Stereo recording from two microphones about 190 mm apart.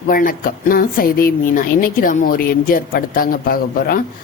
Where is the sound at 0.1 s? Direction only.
45° left (ahead or behind).